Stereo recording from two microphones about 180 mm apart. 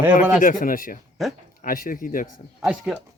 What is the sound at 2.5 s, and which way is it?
Speech, 5° right (ahead or behind).